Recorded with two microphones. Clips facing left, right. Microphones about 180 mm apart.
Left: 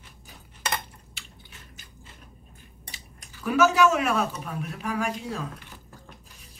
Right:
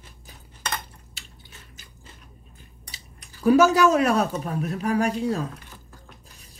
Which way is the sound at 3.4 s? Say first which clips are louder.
Right 4 dB; 35° right (ahead or behind).